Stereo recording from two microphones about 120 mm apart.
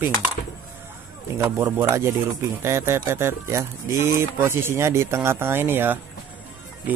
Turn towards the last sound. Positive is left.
turn(degrees=-20)  # may be behind; listen again after turning